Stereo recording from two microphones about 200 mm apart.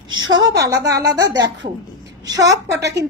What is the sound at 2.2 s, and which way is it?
Speech, 15° right (ahead or behind).